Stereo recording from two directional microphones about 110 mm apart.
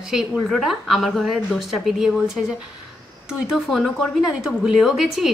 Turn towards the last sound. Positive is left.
turn(degrees=-5)  # may be behind; listen again after turning